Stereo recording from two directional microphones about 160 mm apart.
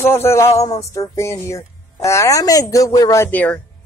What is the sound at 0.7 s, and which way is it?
Music, 20° left (ahead or behind).